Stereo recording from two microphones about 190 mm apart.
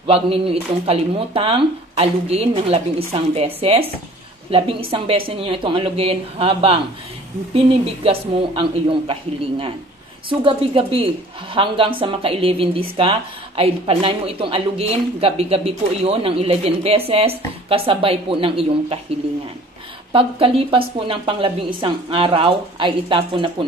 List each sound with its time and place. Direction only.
0.0 s a woman's voice: 30° right (ahead or behind)
20.1 s a woman's voice: 30° right (ahead or behind)